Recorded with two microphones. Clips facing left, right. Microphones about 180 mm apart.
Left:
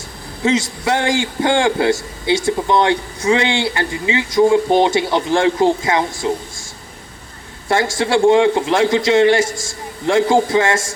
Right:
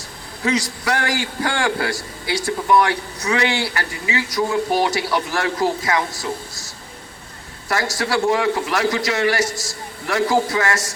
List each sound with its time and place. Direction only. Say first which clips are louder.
0.4 s a man's voice: left 4 dB; 25° left (ahead or behind)
7.7 s a man's voice: left 6 dB; 25° left (ahead or behind)